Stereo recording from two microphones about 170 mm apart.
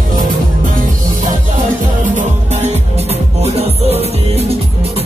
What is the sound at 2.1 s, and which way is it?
Music, 40° right (ahead or behind).